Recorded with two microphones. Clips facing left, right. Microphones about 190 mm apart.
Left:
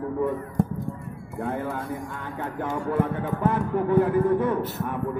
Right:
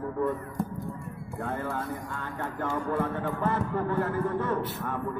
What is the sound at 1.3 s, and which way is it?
A man's voice, 15° left (ahead or behind).